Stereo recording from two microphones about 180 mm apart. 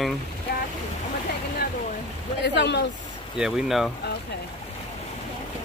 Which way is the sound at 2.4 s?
70° left (ahead or behind).